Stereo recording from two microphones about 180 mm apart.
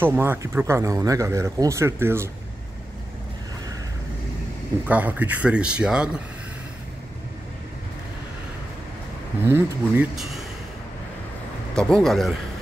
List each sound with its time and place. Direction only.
0.0 s speech: 10° right (ahead or behind)
4.8 s speech: 10° right (ahead or behind)
9.5 s speech: 15° right (ahead or behind)
11.7 s speech: 5° left (ahead or behind)